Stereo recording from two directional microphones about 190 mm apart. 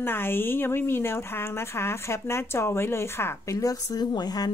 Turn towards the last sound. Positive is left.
turn(degrees=20)  # may be behind; listen again after turning